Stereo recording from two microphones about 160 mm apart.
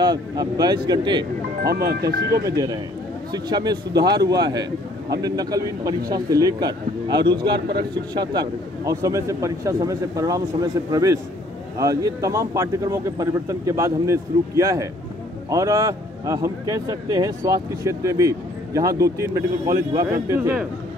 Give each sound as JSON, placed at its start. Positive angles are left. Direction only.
{"t": 0.0, "sound": "speech", "side_deg": -25}
{"t": 1.6, "sound": "speech", "side_deg": -90}
{"t": 2.4, "sound": "speech", "side_deg": -20}